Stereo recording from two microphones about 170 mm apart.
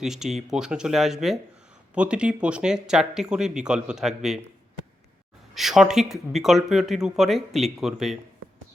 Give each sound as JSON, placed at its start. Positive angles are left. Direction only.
{"t": 0.0, "sound": "speech", "side_deg": 0}
{"t": 5.5, "sound": "speech", "side_deg": 0}